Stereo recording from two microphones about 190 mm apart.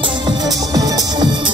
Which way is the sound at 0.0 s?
25° right (ahead or behind).